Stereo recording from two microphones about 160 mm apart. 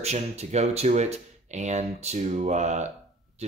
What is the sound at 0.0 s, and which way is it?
Speech, 45° right (ahead or behind).